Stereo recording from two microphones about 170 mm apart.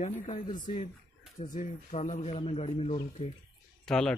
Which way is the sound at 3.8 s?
5° left (ahead or behind).